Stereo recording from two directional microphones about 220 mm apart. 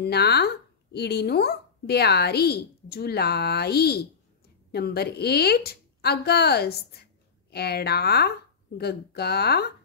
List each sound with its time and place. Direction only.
0.0 s speech: 45° left (ahead or behind)